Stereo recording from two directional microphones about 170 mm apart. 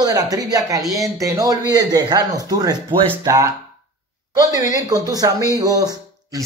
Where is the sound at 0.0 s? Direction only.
20° right (ahead or behind).